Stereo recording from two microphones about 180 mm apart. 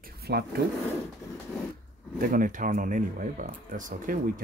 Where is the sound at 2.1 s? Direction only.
50° right (ahead or behind).